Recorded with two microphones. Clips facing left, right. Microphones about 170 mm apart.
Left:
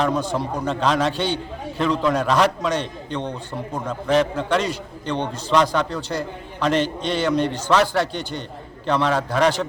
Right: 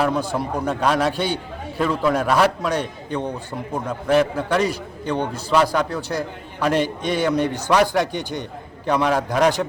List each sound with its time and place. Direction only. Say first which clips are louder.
0.0 s a man's voice: even; 10° right (ahead or behind)